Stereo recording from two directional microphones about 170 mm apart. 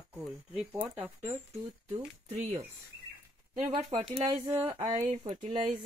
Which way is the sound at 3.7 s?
30° right (ahead or behind).